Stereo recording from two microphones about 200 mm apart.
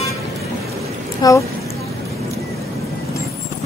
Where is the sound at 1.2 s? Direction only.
20° left (ahead or behind).